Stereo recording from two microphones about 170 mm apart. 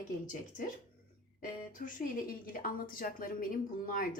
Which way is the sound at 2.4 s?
55° left (ahead or behind).